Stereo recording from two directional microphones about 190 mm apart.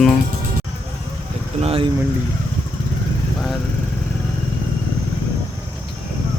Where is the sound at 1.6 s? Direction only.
30° right (ahead or behind).